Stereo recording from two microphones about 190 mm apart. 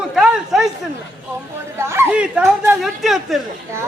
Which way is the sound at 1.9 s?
10° right (ahead or behind).